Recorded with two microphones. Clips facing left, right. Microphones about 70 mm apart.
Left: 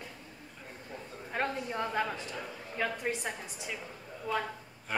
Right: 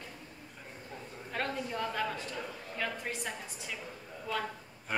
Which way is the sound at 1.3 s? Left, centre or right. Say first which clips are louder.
Left 2 dB; left.